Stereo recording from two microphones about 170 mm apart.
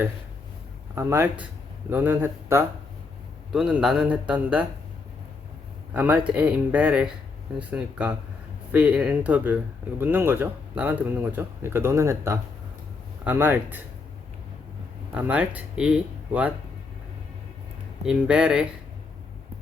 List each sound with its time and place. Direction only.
0.9 s speech: 15° right (ahead or behind)
3.5 s a man's voice: 5° right (ahead or behind)
5.9 s speech: 10° right (ahead or behind)
15.1 s speech: 10° right (ahead or behind)
18.0 s a man's voice: 5° right (ahead or behind)